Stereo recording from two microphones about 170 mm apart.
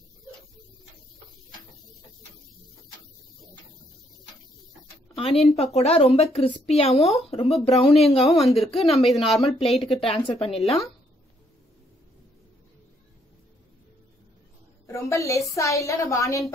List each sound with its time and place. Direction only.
5.1 s a woman's voice: 35° left (ahead or behind)
8.4 s speech: centre (ahead or behind)
8.6 s a woman's voice: 35° left (ahead or behind)
14.9 s a woman's voice: 15° left (ahead or behind)